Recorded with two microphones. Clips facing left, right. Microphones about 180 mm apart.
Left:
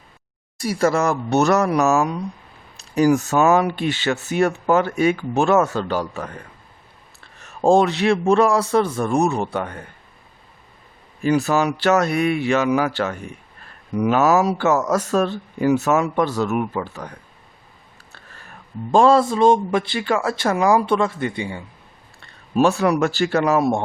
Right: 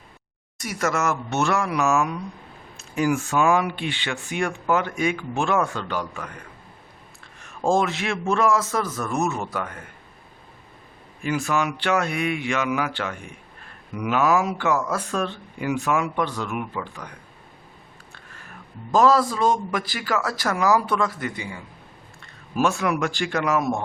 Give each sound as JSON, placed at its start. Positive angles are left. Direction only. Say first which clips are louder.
{"t": 0.6, "sound": "speech", "louder": "left 6 dB", "side_deg": 30}
{"t": 7.3, "sound": "speech", "louder": "left 6 dB", "side_deg": 35}
{"t": 11.2, "sound": "speech", "louder": "left 6 dB", "side_deg": 35}
{"t": 18.9, "sound": "speech", "louder": "left 4 dB", "side_deg": 25}